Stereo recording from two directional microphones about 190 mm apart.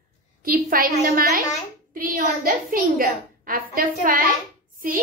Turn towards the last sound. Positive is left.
turn(degrees=-50)  # may be behind; listen again after turning